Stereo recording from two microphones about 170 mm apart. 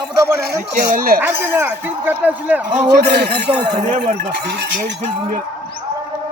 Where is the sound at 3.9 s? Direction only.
40° right (ahead or behind).